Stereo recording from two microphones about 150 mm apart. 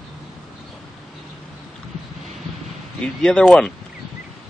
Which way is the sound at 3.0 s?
5° left (ahead or behind).